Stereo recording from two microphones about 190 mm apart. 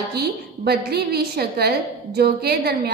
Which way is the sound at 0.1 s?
55° right (ahead or behind).